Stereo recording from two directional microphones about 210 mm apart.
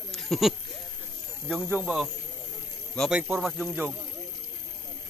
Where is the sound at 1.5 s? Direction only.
5° right (ahead or behind).